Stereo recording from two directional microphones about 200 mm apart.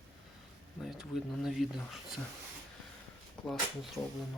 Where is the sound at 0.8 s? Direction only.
Centre (ahead or behind).